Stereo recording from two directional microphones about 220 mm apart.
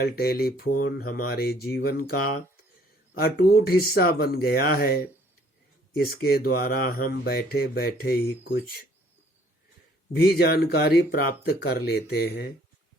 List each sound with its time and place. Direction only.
0.0 s speech: 45° left (ahead or behind)
3.2 s speech: 45° left (ahead or behind)
6.0 s speech: 45° left (ahead or behind)
10.2 s speech: 45° left (ahead or behind)